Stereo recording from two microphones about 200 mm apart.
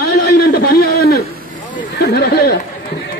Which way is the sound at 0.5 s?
50° left (ahead or behind).